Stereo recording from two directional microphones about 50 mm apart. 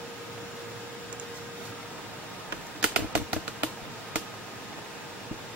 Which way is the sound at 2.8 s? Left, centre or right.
Right.